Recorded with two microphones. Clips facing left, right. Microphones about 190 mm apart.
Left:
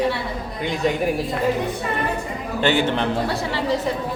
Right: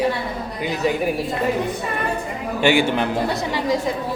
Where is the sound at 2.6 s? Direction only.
10° right (ahead or behind).